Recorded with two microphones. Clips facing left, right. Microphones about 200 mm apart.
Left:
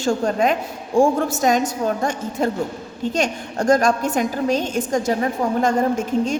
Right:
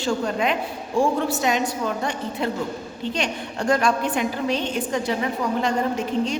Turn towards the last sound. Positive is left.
turn(degrees=45)  # may be behind; listen again after turning